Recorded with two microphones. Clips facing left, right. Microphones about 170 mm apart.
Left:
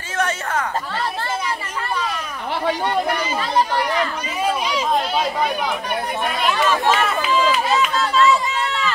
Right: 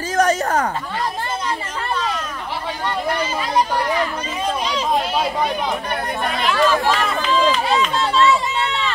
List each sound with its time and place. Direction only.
0.1 s a sound: 40° right (ahead or behind)
4.6 s chatter: 10° left (ahead or behind)
6.2 s speech: centre (ahead or behind)